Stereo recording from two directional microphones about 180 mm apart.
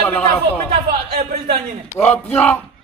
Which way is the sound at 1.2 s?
40° right (ahead or behind).